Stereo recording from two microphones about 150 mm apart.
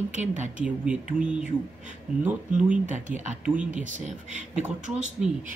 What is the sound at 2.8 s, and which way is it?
Speech, 55° right (ahead or behind).